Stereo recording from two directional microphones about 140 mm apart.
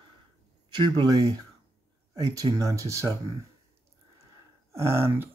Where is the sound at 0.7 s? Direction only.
30° right (ahead or behind).